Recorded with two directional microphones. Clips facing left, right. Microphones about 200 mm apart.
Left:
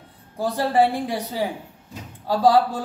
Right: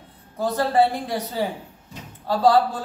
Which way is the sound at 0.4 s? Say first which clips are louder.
Even; 15° left (ahead or behind).